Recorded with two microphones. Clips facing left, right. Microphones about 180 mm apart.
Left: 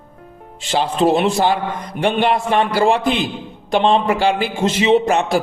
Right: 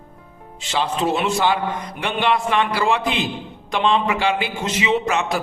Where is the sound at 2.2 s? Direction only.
45° left (ahead or behind).